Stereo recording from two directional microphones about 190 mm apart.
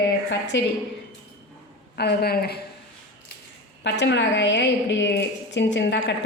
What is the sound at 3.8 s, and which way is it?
A woman's voice, 65° left (ahead or behind).